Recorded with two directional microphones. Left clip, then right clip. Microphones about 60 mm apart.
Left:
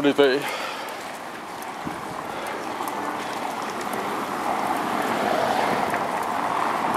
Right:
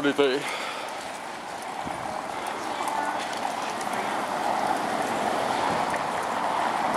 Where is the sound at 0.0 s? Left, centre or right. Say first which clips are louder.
Left 4 dB; left.